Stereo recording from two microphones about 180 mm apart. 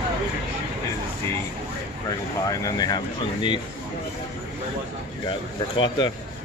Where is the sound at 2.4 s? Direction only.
20° left (ahead or behind).